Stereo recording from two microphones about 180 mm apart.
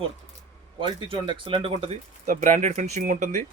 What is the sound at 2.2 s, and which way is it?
Speech, 45° right (ahead or behind).